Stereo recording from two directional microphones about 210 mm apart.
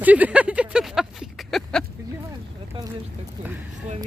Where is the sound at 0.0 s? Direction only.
5° right (ahead or behind).